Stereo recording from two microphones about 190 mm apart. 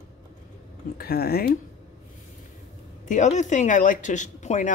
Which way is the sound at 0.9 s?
55° left (ahead or behind).